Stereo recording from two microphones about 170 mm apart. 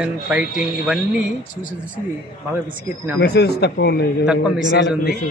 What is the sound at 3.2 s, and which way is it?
Speech, 75° left (ahead or behind).